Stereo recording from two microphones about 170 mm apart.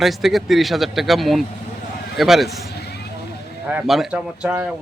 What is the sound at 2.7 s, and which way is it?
Vehicle, 75° left (ahead or behind).